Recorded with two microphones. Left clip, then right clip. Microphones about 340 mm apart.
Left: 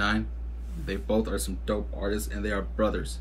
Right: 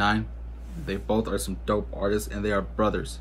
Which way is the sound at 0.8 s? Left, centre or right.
Centre.